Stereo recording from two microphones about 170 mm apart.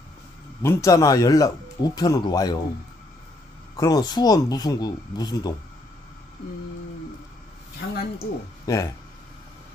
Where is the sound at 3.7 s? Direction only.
20° left (ahead or behind).